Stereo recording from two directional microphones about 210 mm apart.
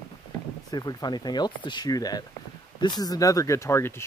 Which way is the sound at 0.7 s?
20° left (ahead or behind).